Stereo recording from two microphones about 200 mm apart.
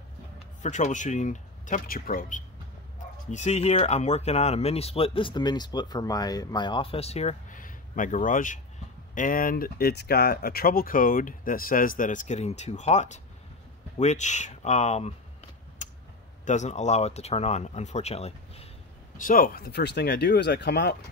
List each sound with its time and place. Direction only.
0.6 s speech: 35° left (ahead or behind)
15.8 s a sound: 40° left (ahead or behind)
16.4 s speech: 35° left (ahead or behind)
19.1 s speech: 45° left (ahead or behind)